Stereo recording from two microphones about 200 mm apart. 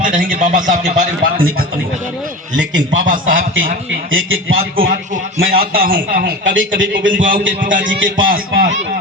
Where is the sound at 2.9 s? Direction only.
45° right (ahead or behind).